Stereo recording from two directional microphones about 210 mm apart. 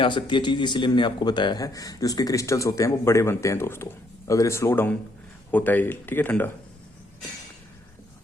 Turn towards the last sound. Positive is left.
turn(degrees=10)  # may be behind; listen again after turning